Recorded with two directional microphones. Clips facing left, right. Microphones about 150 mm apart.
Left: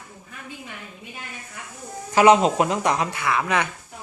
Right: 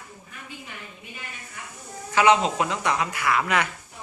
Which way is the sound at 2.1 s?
40° left (ahead or behind).